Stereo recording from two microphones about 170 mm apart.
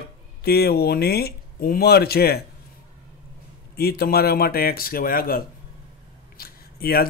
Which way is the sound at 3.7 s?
65° left (ahead or behind).